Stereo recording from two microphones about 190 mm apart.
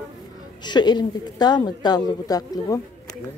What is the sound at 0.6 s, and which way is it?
A woman's voice, 25° left (ahead or behind).